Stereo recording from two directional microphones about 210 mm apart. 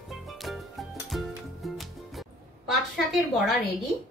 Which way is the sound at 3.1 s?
Centre (ahead or behind).